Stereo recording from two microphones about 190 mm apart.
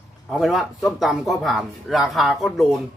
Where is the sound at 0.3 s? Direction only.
Centre (ahead or behind).